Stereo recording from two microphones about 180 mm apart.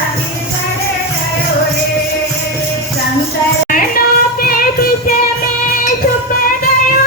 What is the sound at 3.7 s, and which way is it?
Music, 50° left (ahead or behind).